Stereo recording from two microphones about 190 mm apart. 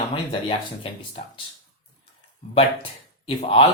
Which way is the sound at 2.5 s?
30° left (ahead or behind).